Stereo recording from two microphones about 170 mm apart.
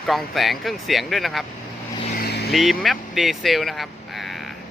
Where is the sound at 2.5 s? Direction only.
Centre (ahead or behind).